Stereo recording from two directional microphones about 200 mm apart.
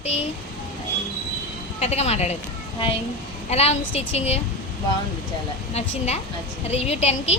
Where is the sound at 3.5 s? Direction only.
30° left (ahead or behind).